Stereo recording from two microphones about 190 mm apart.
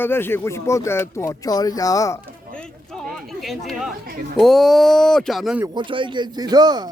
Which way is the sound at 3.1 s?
Centre (ahead or behind).